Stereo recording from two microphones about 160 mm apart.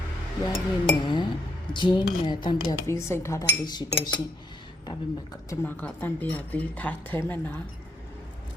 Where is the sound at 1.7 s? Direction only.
30° left (ahead or behind).